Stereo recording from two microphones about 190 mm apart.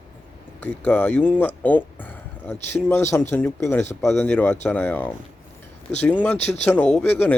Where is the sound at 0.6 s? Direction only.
10° left (ahead or behind).